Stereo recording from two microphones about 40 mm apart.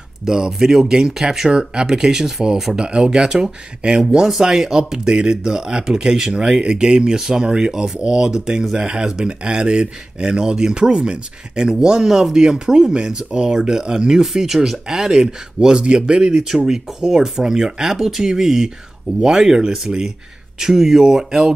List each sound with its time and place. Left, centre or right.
0.2 s speech: centre
16.3 s speech: centre